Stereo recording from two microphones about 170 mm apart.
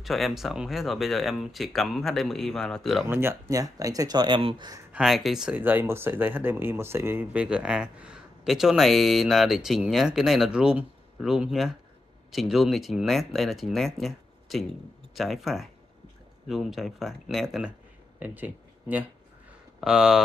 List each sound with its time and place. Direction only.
0.0 s speech: centre (ahead or behind)
3.1 s speech: 15° right (ahead or behind)
4.9 s speech: centre (ahead or behind)